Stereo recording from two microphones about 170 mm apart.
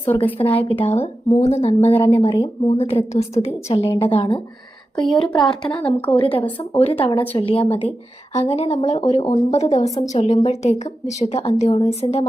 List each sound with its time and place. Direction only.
0.0 s a woman's voice: 35° left (ahead or behind)
6.2 s speech: 10° left (ahead or behind)
6.6 s a woman's voice: 35° left (ahead or behind)